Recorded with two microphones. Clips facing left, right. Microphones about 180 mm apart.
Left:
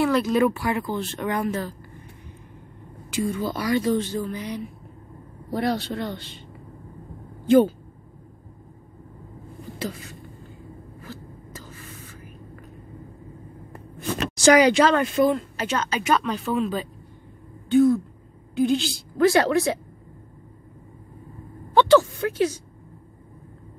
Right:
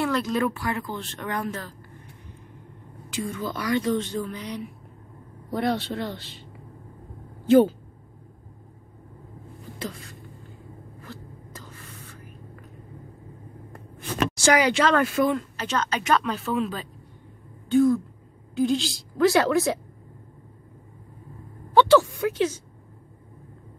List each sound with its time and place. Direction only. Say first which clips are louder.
0.0 s speech: left 4 dB; 5° left (ahead or behind)
3.1 s speech: left 5 dB; 5° left (ahead or behind)
3.3 s speech: left 3 dB; 35° left (ahead or behind)
3.7 s speech: left 1 dB; 10° left (ahead or behind)
9.8 s speech: left 3 dB; 5° left (ahead or behind)
11.0 s a sound: left 2 dB; 5° left (ahead or behind)
14.4 s speech: left 5 dB; 15° left (ahead or behind); by 19.8 s centre (ahead or behind)
21.7 s speech: left 1 dB; 10° right (ahead or behind)